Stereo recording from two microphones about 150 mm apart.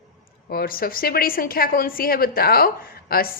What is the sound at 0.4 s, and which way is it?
A woman's voice, 80° left.